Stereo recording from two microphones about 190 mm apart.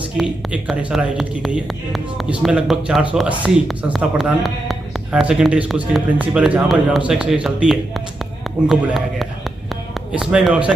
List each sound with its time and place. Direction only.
0.2 s speech: 5° right (ahead or behind)